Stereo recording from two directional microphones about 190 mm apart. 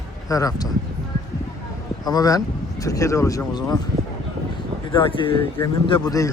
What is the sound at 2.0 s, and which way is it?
Speech, 20° left (ahead or behind).